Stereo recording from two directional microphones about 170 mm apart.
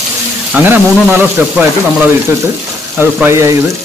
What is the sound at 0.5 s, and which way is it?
Speech, 10° right (ahead or behind).